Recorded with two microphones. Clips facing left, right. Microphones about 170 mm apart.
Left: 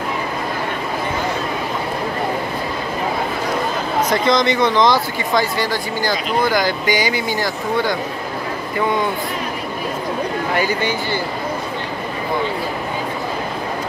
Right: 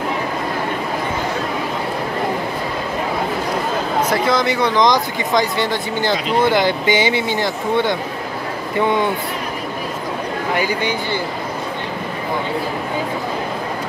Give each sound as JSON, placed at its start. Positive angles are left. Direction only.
{"t": 4.1, "sound": "speech", "side_deg": -5}
{"t": 10.5, "sound": "speech", "side_deg": -15}